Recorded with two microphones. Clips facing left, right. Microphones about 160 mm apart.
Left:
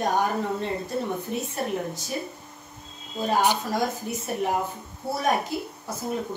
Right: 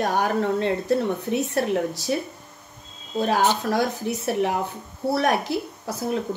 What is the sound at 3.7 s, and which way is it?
Speech, 75° right (ahead or behind).